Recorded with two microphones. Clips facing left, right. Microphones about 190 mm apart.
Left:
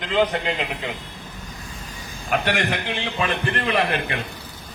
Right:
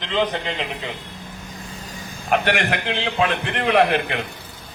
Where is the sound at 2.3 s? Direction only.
55° right (ahead or behind).